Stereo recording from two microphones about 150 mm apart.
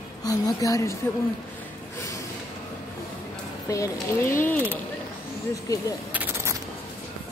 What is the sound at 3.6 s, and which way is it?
Speech, 20° left (ahead or behind).